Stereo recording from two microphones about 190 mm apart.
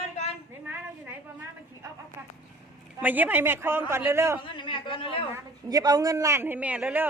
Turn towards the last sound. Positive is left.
turn(degrees=-5)  # may be behind; listen again after turning